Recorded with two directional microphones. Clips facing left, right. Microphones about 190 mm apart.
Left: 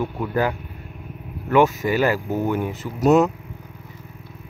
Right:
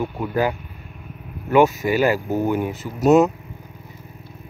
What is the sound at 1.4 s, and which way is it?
Speech, 15° right (ahead or behind).